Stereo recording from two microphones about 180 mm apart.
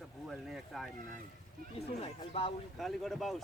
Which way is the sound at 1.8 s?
35° left (ahead or behind).